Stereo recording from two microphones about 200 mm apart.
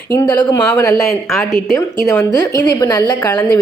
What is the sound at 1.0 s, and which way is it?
Speech, centre (ahead or behind).